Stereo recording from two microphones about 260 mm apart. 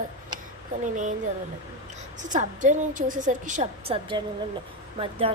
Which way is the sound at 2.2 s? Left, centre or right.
Right.